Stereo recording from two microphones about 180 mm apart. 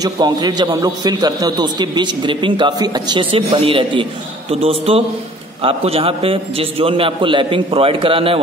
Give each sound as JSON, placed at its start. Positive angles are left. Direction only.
{"t": 0.0, "sound": "a man's voice", "side_deg": -20}